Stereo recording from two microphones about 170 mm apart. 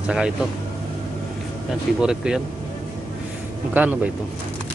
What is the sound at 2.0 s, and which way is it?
Speech, 5° right (ahead or behind).